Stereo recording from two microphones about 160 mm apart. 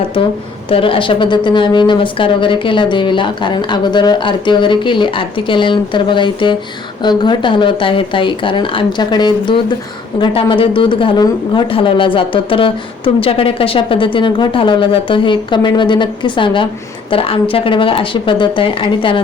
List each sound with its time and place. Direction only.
0.7 s speech: 35° left (ahead or behind)